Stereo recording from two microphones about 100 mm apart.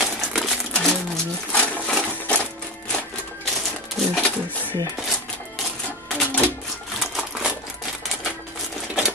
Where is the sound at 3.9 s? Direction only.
5° left (ahead or behind).